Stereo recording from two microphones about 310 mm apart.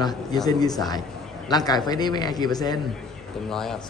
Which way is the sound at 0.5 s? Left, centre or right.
Centre.